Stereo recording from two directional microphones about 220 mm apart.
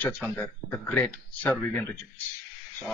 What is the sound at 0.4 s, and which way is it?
Speech, 10° left (ahead or behind).